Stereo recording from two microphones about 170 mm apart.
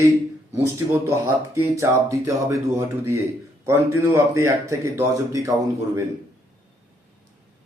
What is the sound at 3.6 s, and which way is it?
A man's voice, 15° right (ahead or behind).